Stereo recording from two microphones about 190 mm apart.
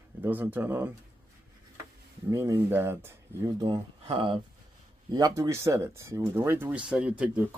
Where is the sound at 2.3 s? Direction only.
15° right (ahead or behind).